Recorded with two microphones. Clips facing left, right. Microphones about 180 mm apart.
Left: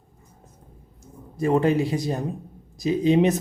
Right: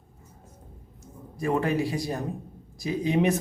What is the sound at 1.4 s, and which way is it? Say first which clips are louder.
A woman's voice: left 5 dB; 25° left (ahead or behind).